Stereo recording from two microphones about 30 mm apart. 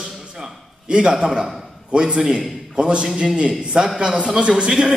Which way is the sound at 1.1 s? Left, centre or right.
Centre.